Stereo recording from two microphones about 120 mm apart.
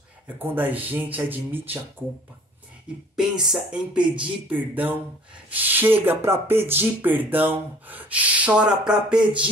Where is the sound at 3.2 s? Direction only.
5° right (ahead or behind).